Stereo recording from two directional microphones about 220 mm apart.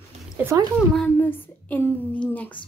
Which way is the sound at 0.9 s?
5° left (ahead or behind).